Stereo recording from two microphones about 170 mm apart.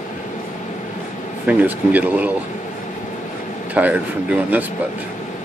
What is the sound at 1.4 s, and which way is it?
Speech, 10° right (ahead or behind).